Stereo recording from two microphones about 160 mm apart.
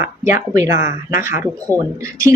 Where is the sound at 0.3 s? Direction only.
15° right (ahead or behind).